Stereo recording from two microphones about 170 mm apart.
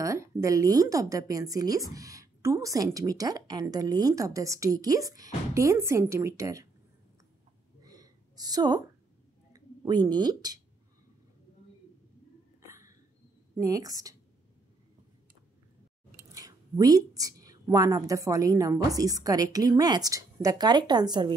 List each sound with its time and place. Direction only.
0.0 s speech: 20° right (ahead or behind)
7.8 s a sound: 20° right (ahead or behind)
9.5 s speech: 25° right (ahead or behind)
12.6 s hiccup: 15° right (ahead or behind)
13.6 s speech: 20° right (ahead or behind)
16.2 s speech: 20° right (ahead or behind)